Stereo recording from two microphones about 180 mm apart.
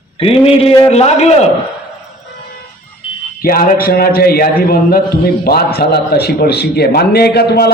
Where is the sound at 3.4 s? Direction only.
55° left (ahead or behind).